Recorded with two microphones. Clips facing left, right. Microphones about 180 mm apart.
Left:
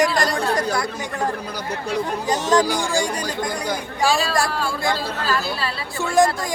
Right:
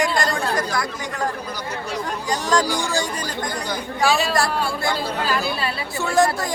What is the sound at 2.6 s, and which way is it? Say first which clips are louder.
Speech: left 2 dB; 55° left (ahead or behind).